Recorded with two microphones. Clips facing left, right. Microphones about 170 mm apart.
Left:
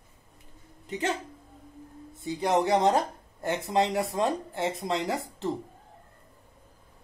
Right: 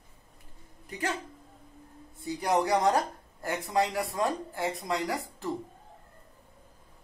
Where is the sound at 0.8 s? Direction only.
20° left (ahead or behind).